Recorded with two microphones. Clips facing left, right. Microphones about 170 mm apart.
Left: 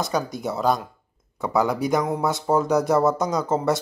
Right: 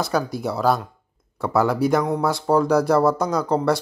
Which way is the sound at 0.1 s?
Centre (ahead or behind).